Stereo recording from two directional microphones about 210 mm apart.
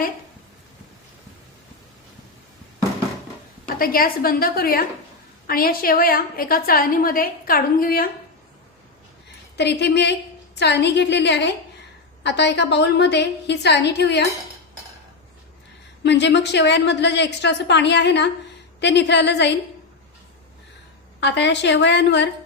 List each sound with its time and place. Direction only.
3.8 s a woman's voice: 45° left (ahead or behind)
9.6 s a woman's voice: 55° left (ahead or behind)
16.0 s a woman's voice: 55° left (ahead or behind)
21.2 s a woman's voice: 55° left (ahead or behind)